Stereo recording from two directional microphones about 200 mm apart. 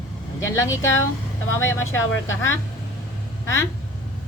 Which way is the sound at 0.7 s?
75° left (ahead or behind).